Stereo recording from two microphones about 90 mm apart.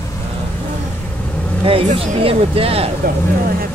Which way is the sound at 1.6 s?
90° right.